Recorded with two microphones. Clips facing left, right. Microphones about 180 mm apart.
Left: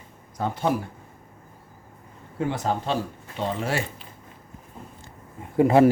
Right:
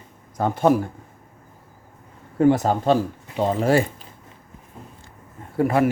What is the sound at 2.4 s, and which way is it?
Speech, 45° right (ahead or behind).